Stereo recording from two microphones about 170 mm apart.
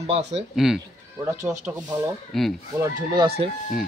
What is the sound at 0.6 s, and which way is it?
Speech, 5° right (ahead or behind).